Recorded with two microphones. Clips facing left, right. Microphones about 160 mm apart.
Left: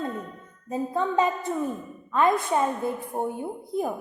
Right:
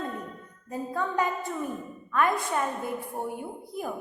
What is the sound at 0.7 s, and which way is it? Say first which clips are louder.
A woman's voice: left 4 dB; 20° left (ahead or behind).